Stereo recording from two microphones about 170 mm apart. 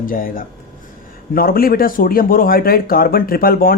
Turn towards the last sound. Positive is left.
turn(degrees=60)  # may be behind; listen again after turning